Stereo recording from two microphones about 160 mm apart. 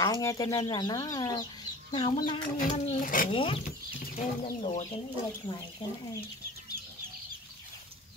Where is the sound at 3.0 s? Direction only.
60° left (ahead or behind).